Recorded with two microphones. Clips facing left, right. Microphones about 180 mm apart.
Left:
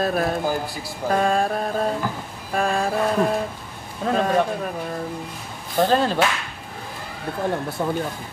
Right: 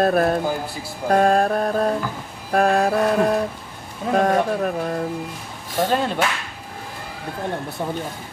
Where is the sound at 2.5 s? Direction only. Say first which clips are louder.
Right 5 dB; 60° right (ahead or behind).